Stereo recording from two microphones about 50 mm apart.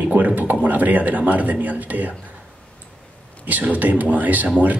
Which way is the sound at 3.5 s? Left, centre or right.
Right.